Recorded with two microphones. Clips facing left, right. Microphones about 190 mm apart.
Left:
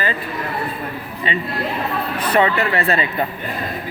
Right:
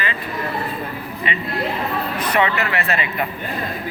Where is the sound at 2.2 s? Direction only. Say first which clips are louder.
Left 4 dB; 35° left (ahead or behind).